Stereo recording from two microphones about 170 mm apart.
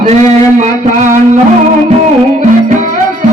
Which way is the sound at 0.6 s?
50° right (ahead or behind).